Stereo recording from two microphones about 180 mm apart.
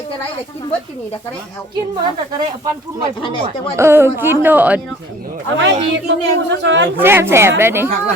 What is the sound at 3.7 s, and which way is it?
A woman's voice, 15° right (ahead or behind).